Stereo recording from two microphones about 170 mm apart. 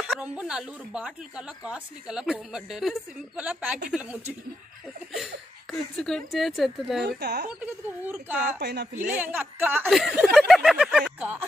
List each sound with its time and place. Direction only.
0.2 s a woman's voice: 5° right (ahead or behind)
7.2 s speech: 75° right (ahead or behind)
8.0 s a woman's voice: 10° right (ahead or behind)
8.4 s speech: 80° right
9.1 s a woman's voice: 10° right (ahead or behind)